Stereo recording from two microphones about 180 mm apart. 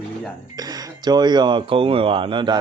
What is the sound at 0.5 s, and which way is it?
Speech, 20° right (ahead or behind).